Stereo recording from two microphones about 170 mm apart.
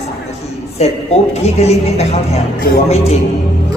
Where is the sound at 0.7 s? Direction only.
40° left (ahead or behind).